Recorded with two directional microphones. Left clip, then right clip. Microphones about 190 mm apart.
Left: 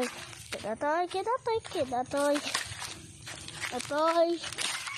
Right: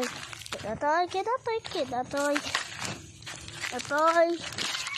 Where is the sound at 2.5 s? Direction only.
10° right (ahead or behind).